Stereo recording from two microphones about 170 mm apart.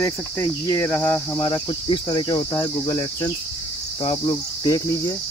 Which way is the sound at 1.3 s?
25° left (ahead or behind).